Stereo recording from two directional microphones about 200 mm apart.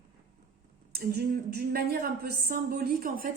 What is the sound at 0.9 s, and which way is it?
Speech, 50° right (ahead or behind).